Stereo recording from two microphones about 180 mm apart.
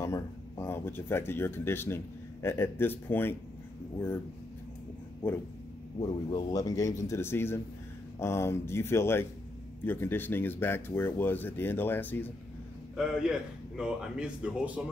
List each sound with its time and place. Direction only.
0.0 s speech: 15° left (ahead or behind)
6.0 s speech: 25° left (ahead or behind)
12.9 s a man's voice: 5° right (ahead or behind)